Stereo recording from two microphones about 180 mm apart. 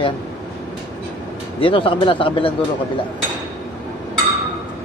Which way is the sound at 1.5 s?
30° left (ahead or behind).